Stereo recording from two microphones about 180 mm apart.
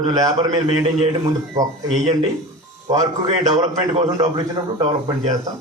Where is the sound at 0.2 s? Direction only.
20° right (ahead or behind).